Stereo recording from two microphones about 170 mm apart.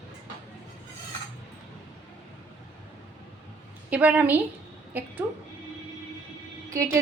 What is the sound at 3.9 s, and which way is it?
A woman's voice, 10° right (ahead or behind).